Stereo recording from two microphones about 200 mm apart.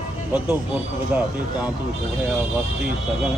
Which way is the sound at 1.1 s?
10° right (ahead or behind).